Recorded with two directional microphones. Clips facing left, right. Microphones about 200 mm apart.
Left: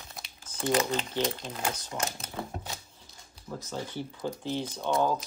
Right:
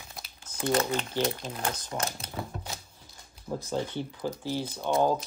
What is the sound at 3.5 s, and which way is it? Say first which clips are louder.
Speech: right 5 dB; 30° right (ahead or behind).